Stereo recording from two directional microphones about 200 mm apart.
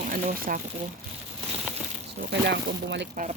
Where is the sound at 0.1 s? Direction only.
45° right (ahead or behind).